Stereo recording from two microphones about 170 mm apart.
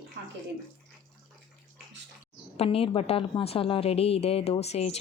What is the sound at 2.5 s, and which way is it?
A woman's voice, 35° left (ahead or behind).